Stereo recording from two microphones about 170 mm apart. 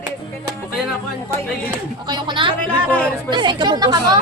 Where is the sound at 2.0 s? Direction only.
25° right (ahead or behind).